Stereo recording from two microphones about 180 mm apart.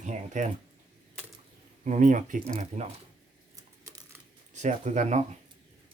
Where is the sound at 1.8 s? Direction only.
45° right (ahead or behind).